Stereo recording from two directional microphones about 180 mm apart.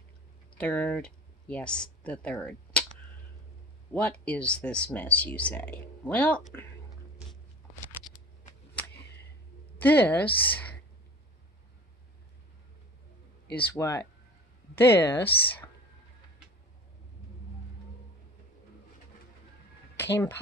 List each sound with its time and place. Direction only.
0.6 s speech: 5° left (ahead or behind)
3.9 s speech: 10° left (ahead or behind)
8.9 s a sound: 70° left (ahead or behind)
9.8 s a woman's voice: 10° left (ahead or behind)
13.5 s speech: 10° left (ahead or behind)
20.0 s speech: 10° left (ahead or behind)